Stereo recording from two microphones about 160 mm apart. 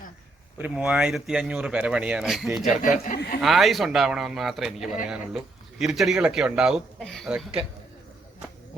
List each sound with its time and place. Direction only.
0.6 s speech: 5° right (ahead or behind)
2.6 s speech: 55° left (ahead or behind)
3.4 s speech: centre (ahead or behind)